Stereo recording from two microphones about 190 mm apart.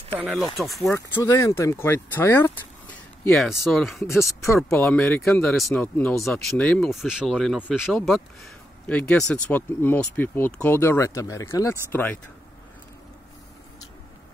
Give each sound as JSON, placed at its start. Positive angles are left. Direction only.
{"t": 0.2, "sound": "speech", "side_deg": 0}
{"t": 0.9, "sound": "speech", "side_deg": 15}
{"t": 3.3, "sound": "speech", "side_deg": 0}
{"t": 4.3, "sound": "speech", "side_deg": 15}
{"t": 4.6, "sound": "speech", "side_deg": 5}